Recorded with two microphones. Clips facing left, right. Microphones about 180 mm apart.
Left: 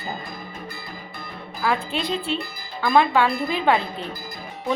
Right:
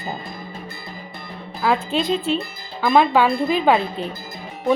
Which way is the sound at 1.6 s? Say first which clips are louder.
Right 4 dB; 20° right (ahead or behind).